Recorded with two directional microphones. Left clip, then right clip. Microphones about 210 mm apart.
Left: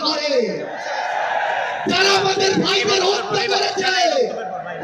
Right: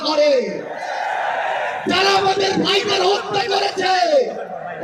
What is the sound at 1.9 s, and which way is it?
Speech, 55° right (ahead or behind).